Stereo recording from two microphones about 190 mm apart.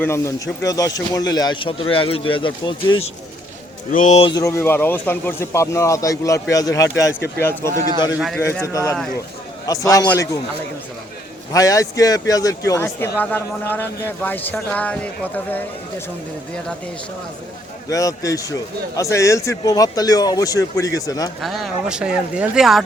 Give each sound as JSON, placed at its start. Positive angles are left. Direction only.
{"t": 0.0, "sound": "a man's voice", "side_deg": 15}
{"t": 3.9, "sound": "speech", "side_deg": 40}
{"t": 4.3, "sound": "a man's voice", "side_deg": 20}
{"t": 7.1, "sound": "speech", "side_deg": 60}
{"t": 8.4, "sound": "a man's voice", "side_deg": 15}
{"t": 11.5, "sound": "a man's voice", "side_deg": 20}
{"t": 17.8, "sound": "a man's voice", "side_deg": 15}
{"t": 21.4, "sound": "speech", "side_deg": 0}